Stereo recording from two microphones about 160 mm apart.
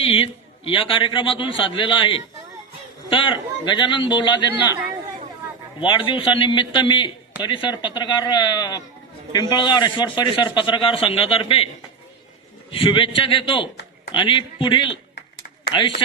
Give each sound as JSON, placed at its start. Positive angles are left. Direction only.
{"t": 0.0, "sound": "a man's voice", "side_deg": 35}
{"t": 4.7, "sound": "speech", "side_deg": -15}
{"t": 5.8, "sound": "a man's voice", "side_deg": 30}
{"t": 12.7, "sound": "a man's voice", "side_deg": 30}
{"t": 15.1, "sound": "a sound", "side_deg": 75}
{"t": 15.7, "sound": "a man's voice", "side_deg": 30}